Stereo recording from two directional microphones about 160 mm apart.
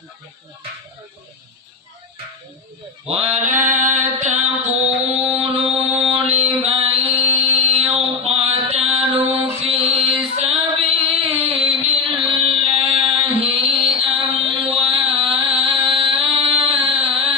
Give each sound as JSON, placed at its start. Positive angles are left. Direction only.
{"t": 3.1, "sound": "mantra", "side_deg": -40}
{"t": 11.6, "sound": "a sound", "side_deg": -40}
{"t": 12.4, "sound": "music", "side_deg": -35}